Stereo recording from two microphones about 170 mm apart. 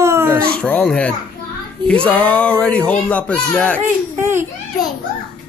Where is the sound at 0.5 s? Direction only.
5° left (ahead or behind).